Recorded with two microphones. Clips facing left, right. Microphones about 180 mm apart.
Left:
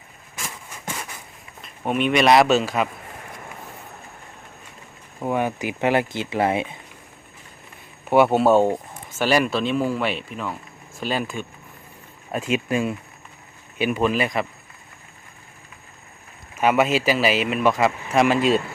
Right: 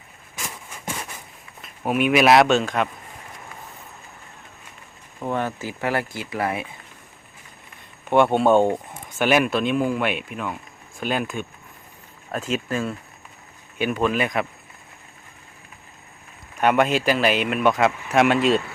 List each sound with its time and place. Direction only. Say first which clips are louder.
1.6 s speech: right 1 dB; 5° right (ahead or behind)
5.2 s speech: left 2 dB; 10° left (ahead or behind)
8.1 s speech: left 1 dB; 5° left (ahead or behind)
16.6 s speech: even; 5° left (ahead or behind)